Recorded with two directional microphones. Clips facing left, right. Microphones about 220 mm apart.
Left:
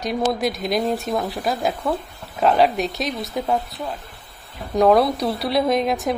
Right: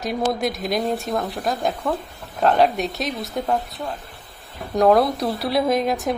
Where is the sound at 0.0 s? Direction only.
Centre (ahead or behind).